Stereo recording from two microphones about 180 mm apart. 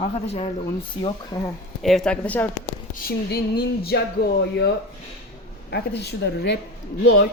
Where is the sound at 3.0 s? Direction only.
60° left (ahead or behind).